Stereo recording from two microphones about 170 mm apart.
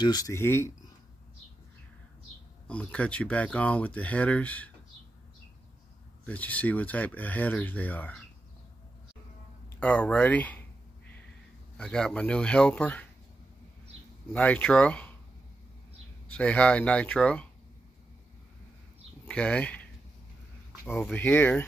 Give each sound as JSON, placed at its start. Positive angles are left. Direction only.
{"t": 0.0, "sound": "speech", "side_deg": 20}
{"t": 2.7, "sound": "speech", "side_deg": 5}
{"t": 6.2, "sound": "speech", "side_deg": 10}
{"t": 9.8, "sound": "a sound", "side_deg": 10}
{"t": 11.7, "sound": "speech", "side_deg": 5}
{"t": 14.3, "sound": "speech", "side_deg": 10}
{"t": 16.3, "sound": "speech", "side_deg": 5}
{"t": 19.2, "sound": "speech", "side_deg": 5}